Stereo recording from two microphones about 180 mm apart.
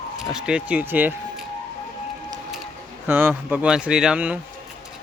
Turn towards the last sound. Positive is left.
turn(degrees=-10)  # may be behind; listen again after turning